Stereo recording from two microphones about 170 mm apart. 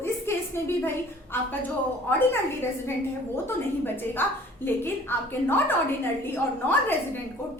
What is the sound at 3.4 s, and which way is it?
A woman's voice, 10° left (ahead or behind).